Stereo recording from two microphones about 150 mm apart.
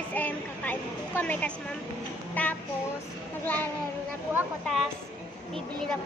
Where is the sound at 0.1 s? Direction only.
10° left (ahead or behind).